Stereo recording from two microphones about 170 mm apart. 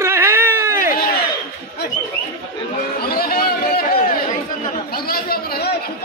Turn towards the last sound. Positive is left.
turn(degrees=65)  # may be behind; listen again after turning